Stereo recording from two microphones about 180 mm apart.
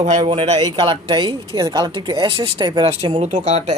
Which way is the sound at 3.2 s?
40° right (ahead or behind).